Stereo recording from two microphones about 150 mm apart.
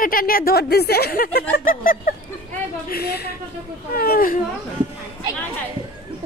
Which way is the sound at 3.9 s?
80° left.